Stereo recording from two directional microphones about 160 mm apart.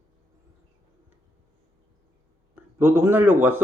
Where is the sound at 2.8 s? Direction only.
15° right (ahead or behind).